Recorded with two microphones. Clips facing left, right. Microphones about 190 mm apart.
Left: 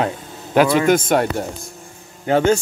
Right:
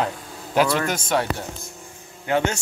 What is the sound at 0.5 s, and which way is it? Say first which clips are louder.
Speech: left 7 dB; 55° left (ahead or behind).